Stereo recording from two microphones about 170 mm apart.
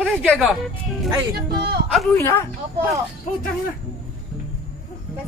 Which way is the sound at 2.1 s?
15° left (ahead or behind).